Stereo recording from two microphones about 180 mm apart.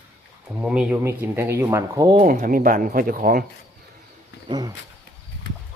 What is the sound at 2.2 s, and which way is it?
Speech, 50° right (ahead or behind).